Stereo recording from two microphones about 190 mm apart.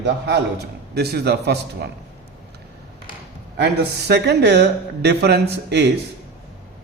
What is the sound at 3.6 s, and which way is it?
A man's voice, 60° right (ahead or behind).